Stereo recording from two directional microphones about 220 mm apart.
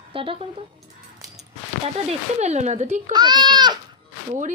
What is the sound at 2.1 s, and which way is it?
Speech, 30° right (ahead or behind).